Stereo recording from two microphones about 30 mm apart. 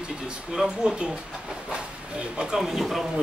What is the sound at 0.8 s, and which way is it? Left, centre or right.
Speech, right.